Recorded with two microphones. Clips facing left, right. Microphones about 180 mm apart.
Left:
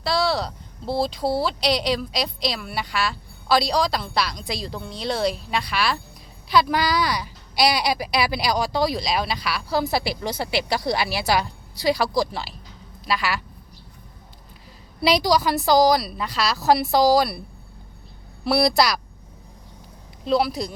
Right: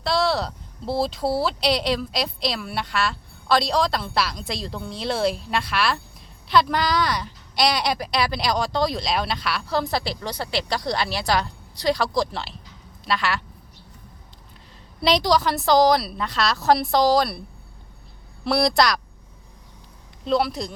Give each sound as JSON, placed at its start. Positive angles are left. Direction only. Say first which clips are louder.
{"t": 0.0, "sound": "speech", "louder": "even", "side_deg": 0}
{"t": 15.0, "sound": "speech", "louder": "even", "side_deg": 5}
{"t": 18.4, "sound": "speech", "louder": "left 1 dB", "side_deg": 5}
{"t": 20.2, "sound": "speech", "louder": "left 1 dB", "side_deg": 0}